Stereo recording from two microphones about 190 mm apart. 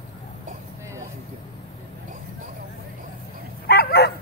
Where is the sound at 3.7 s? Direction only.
55° left (ahead or behind).